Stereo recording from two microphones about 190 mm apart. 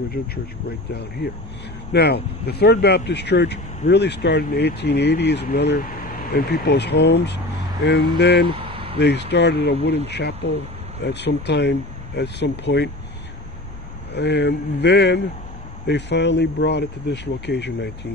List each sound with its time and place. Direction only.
0.2 s speech: 55° left (ahead or behind)
1.9 s speech: 60° left (ahead or behind)
8.5 s vehicle: 30° right (ahead or behind)
8.9 s speech: 65° left (ahead or behind)
14.1 s speech: 65° left (ahead or behind)